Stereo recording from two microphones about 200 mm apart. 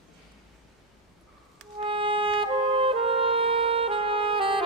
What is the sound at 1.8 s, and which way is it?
Music, 25° right (ahead or behind).